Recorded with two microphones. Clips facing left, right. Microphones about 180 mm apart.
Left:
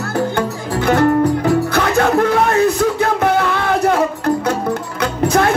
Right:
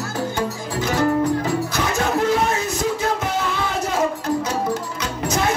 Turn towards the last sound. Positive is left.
turn(degrees=60)  # may be behind; listen again after turning